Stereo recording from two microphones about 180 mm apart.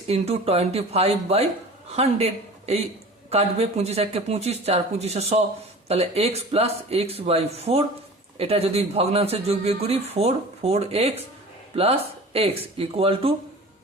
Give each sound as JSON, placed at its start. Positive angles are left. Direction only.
{"t": 0.1, "sound": "a man's voice", "side_deg": -35}